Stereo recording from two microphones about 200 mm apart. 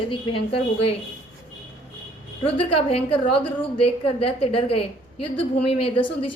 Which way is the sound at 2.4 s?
30° left (ahead or behind).